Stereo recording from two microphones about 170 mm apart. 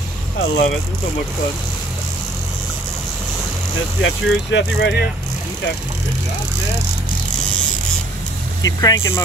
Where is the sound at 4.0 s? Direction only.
90° left.